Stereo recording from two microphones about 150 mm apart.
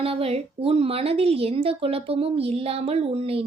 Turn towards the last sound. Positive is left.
turn(degrees=-40)  # may be behind; listen again after turning